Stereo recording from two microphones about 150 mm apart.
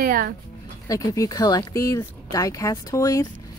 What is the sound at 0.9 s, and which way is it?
Speech, 25° left (ahead or behind).